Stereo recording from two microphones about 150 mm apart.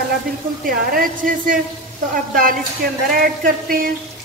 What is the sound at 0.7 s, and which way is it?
A woman's voice, 70° right (ahead or behind).